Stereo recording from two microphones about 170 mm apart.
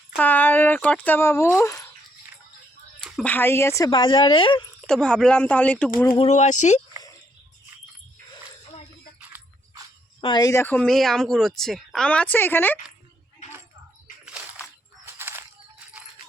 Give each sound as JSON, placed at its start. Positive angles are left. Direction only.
{"t": 0.2, "sound": "speech", "side_deg": 10}
{"t": 3.0, "sound": "speech", "side_deg": 5}
{"t": 4.9, "sound": "speech", "side_deg": 5}
{"t": 6.1, "sound": "speech", "side_deg": 40}
{"t": 10.2, "sound": "speech", "side_deg": 25}
{"t": 14.3, "sound": "a sound", "side_deg": -5}